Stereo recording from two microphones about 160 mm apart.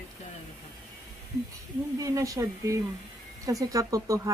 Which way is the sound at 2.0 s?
20° right (ahead or behind).